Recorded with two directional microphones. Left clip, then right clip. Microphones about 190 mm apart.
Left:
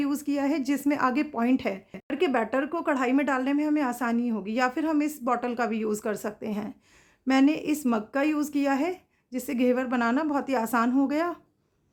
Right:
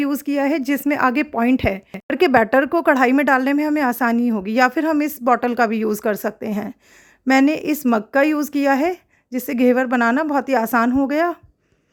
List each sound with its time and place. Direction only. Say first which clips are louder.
0.0 s a woman's voice: right 8 dB; 35° right (ahead or behind)